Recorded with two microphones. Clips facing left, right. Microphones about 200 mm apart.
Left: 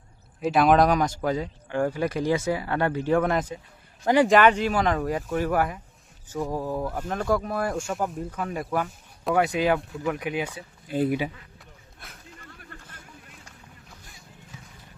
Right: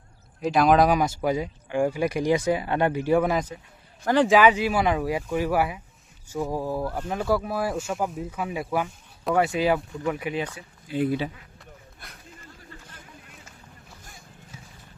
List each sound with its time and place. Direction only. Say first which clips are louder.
0.4 s speech: even; centre (ahead or behind)
4.0 s speech: left 1 dB; 10° left (ahead or behind)
4.3 s speech: even; 5° right (ahead or behind)
10.9 s speech: left 1 dB; 50° left (ahead or behind)
11.9 s a sound: even; centre (ahead or behind)
14.0 s a sound: right 2 dB; 50° right (ahead or behind)